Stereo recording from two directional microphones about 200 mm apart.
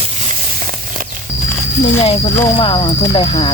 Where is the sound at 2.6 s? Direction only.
25° left (ahead or behind).